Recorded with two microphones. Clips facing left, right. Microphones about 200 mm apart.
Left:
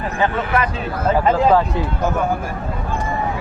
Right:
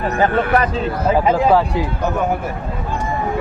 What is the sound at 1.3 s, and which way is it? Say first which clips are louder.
Speech: left 1 dB; 10° right (ahead or behind).